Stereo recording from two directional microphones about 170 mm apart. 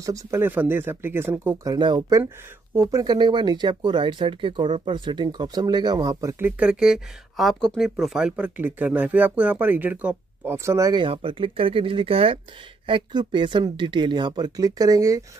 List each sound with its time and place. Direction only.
0.0 s speech: 20° right (ahead or behind)
6.4 s speech: 5° right (ahead or behind)